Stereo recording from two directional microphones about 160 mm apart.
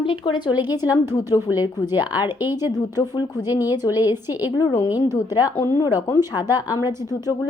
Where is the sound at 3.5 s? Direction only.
15° right (ahead or behind).